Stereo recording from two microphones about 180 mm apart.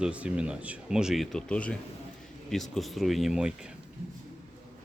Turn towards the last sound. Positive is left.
turn(degrees=0)  # may be behind; listen again after turning